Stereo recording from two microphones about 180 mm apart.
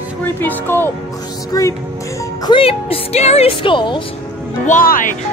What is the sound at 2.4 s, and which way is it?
Speech, 30° left (ahead or behind).